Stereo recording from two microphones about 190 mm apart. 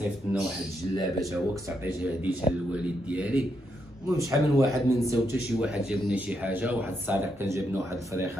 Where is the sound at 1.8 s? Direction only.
10° right (ahead or behind).